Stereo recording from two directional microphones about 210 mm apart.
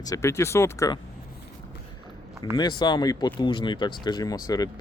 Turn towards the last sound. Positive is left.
turn(degrees=20)  # may be behind; listen again after turning